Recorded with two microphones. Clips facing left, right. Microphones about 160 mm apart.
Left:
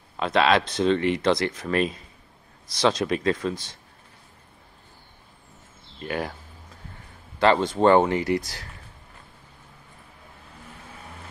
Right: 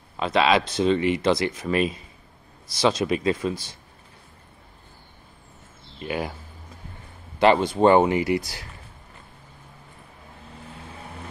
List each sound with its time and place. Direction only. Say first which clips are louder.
0.2 s speech: even; centre (ahead or behind)
5.9 s speech: right 1 dB; 10° right (ahead or behind)
7.3 s speech: right 2 dB; 15° right (ahead or behind)